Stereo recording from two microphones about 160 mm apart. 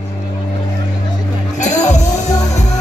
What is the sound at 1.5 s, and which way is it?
Music, 50° left (ahead or behind).